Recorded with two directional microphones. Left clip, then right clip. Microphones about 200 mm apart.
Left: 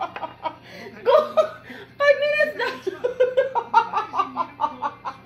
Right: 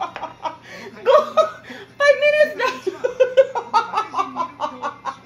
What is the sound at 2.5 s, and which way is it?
Laughter, 10° right (ahead or behind).